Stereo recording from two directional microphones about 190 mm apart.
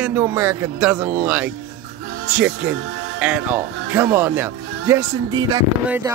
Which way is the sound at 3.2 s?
5° right (ahead or behind).